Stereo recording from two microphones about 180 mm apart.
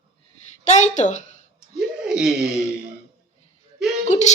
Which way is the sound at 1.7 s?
5° right (ahead or behind).